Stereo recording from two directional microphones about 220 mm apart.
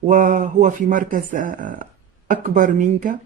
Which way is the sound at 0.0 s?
35° right (ahead or behind).